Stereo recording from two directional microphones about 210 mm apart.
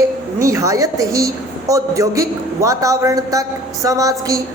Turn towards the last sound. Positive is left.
turn(degrees=-15)  # may be behind; listen again after turning